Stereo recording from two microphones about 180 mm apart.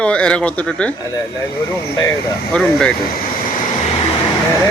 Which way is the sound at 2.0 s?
20° left (ahead or behind).